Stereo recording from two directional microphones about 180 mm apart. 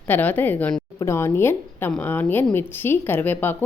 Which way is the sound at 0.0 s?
10° left (ahead or behind).